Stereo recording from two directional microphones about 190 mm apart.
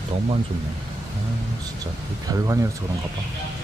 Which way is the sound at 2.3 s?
20° right (ahead or behind).